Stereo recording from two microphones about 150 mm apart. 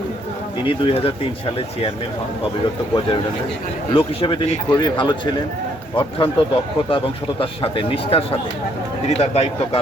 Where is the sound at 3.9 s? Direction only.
35° left (ahead or behind).